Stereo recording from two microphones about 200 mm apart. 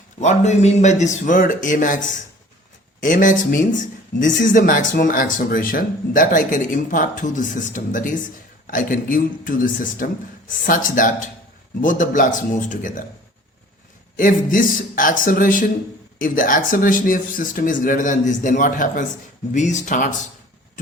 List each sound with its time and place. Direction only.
0.2 s speech: 35° left (ahead or behind)
3.0 s speech: 40° left (ahead or behind)
14.2 s speech: 40° left (ahead or behind)